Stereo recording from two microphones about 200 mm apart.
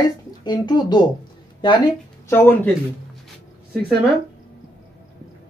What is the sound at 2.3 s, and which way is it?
Speech, 10° left (ahead or behind).